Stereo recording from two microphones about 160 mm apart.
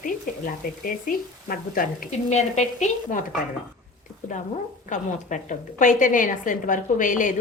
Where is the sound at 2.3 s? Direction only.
45° left (ahead or behind).